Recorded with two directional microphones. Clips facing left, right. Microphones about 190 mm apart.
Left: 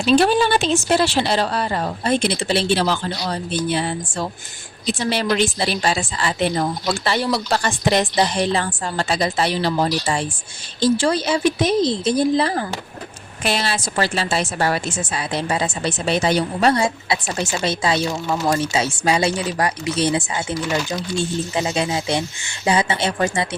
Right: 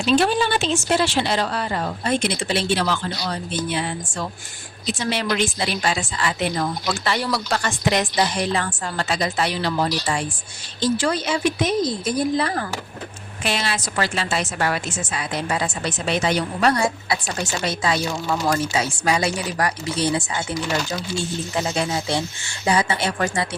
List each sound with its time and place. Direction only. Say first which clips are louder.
0.2 s a woman's voice: left 3 dB; 40° left (ahead or behind); by 20.4 s 20° left (ahead or behind)
21.5 s speech: even; 15° left (ahead or behind)